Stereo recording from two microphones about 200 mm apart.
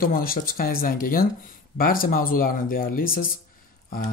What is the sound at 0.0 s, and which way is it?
Speech, 45° left (ahead or behind).